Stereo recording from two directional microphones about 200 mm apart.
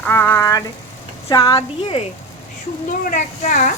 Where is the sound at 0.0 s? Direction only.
10° left (ahead or behind).